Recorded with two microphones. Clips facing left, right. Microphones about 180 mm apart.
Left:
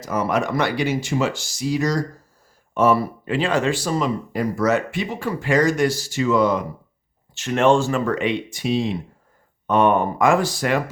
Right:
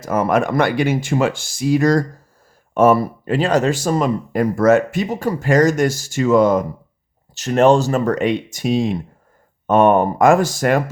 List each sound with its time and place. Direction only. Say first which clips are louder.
0.0 s speech: right 5 dB; 50° right (ahead or behind)